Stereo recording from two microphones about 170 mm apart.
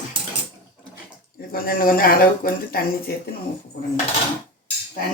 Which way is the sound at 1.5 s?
60° left (ahead or behind).